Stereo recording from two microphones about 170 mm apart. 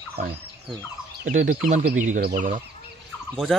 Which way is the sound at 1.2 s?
50° right (ahead or behind).